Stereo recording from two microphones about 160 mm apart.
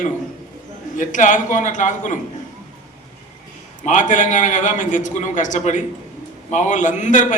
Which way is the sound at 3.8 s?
50° left (ahead or behind).